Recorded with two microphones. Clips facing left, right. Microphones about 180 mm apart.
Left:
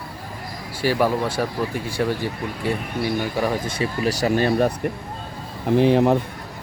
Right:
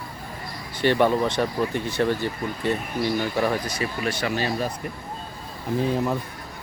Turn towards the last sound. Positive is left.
turn(degrees=70)  # may be behind; listen again after turning